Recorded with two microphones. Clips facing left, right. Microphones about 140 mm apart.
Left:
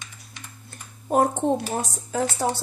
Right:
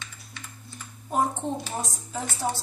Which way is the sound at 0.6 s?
65° left (ahead or behind).